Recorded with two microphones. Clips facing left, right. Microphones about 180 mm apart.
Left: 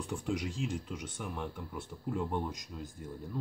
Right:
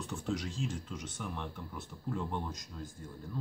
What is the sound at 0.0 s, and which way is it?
Speech, 15° left (ahead or behind).